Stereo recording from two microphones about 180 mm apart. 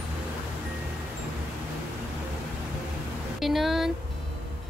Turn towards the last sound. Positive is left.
turn(degrees=0)  # may be behind; listen again after turning